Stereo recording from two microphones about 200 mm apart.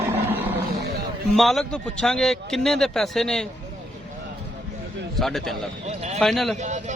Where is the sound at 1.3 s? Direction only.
Centre (ahead or behind).